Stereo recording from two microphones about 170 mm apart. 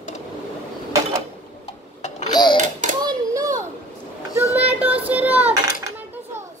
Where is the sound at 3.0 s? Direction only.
20° right (ahead or behind).